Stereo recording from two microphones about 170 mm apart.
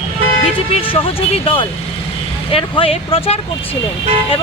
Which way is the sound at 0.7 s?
30° left (ahead or behind).